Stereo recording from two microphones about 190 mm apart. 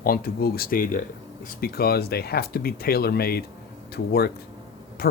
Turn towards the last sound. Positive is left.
turn(degrees=55)  # may be behind; listen again after turning